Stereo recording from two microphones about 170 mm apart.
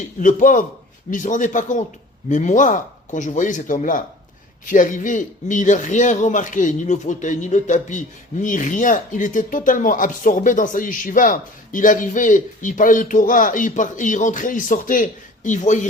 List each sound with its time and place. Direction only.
0.2 s a man's voice: 50° left (ahead or behind)